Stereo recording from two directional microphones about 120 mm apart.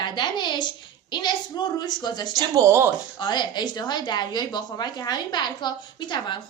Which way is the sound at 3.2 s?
40° left (ahead or behind).